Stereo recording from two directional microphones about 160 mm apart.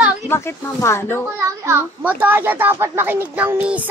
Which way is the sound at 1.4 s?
20° right (ahead or behind).